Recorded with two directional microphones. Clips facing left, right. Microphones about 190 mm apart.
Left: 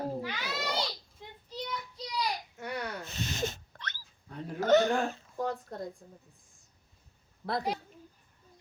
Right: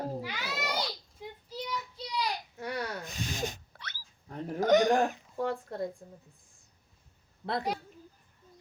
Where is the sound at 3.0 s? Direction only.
15° right (ahead or behind).